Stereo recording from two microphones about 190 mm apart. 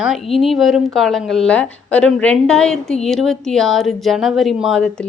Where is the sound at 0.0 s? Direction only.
Centre (ahead or behind).